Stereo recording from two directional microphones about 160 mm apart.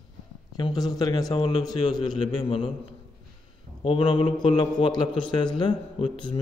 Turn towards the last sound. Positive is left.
turn(degrees=30)  # may be behind; listen again after turning